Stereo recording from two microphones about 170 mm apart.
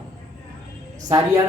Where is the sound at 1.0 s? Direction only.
20° right (ahead or behind).